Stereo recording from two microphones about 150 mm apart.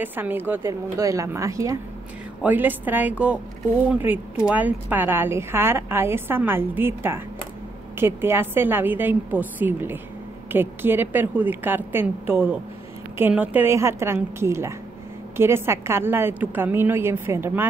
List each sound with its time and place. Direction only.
0.0 s a woman's voice: 15° right (ahead or behind)